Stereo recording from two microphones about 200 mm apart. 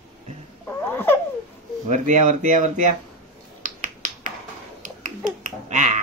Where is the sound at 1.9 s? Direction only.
40° right (ahead or behind).